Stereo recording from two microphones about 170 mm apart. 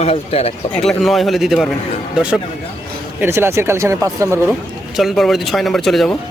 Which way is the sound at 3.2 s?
15° right (ahead or behind).